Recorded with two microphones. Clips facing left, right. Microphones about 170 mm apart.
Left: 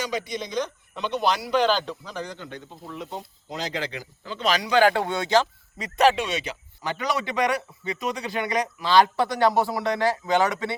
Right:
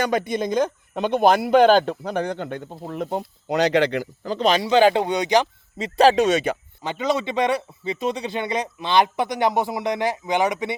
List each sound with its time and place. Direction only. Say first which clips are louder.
0.0 s a man's voice: right 7 dB; 55° right (ahead or behind)
4.2 s speech: right 5 dB; 40° right (ahead or behind)
6.2 s a man's voice: right 10 dB; 50° right (ahead or behind)
6.8 s speech: right 4 dB; 25° right (ahead or behind)